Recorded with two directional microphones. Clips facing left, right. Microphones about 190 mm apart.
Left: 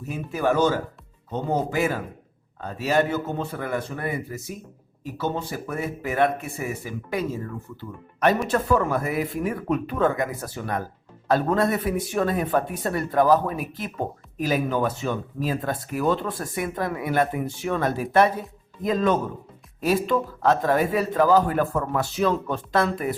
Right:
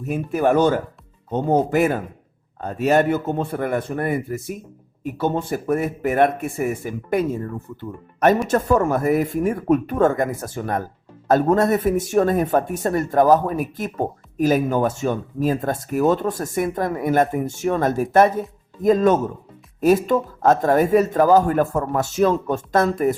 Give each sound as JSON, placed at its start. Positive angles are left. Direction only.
{"t": 0.1, "sound": "speech", "side_deg": -50}